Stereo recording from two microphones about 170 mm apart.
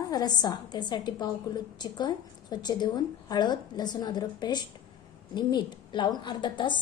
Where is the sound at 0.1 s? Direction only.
25° left (ahead or behind).